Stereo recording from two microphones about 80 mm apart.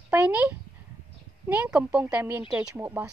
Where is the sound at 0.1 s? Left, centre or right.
Right.